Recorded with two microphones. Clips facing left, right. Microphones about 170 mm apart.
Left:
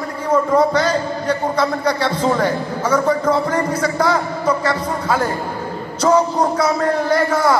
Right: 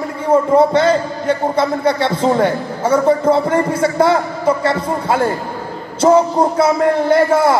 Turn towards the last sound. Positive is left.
turn(degrees=-25)  # may be behind; listen again after turning